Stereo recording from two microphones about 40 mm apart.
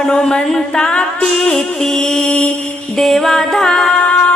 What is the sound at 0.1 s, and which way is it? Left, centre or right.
Music, centre.